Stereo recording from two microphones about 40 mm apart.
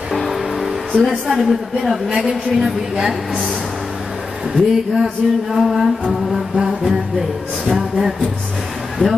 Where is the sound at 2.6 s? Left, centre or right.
Centre.